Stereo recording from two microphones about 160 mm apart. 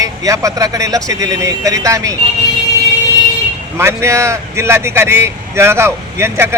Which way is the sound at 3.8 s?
15° right (ahead or behind).